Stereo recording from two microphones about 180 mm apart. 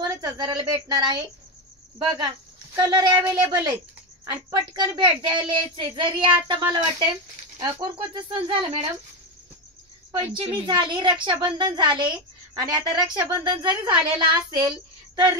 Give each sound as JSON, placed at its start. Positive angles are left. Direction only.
{"t": 0.0, "sound": "a woman's voice", "side_deg": -20}
{"t": 3.2, "sound": "a woman's voice", "side_deg": -15}
{"t": 10.6, "sound": "a woman's voice", "side_deg": -25}